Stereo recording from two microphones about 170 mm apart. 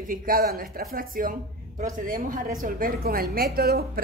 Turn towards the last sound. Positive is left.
turn(degrees=-65)  # may be behind; listen again after turning